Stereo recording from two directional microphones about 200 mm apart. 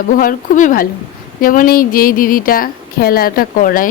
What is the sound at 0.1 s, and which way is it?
A woman's voice, 45° left (ahead or behind).